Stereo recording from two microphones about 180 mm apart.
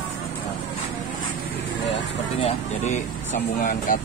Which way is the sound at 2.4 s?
35° left (ahead or behind).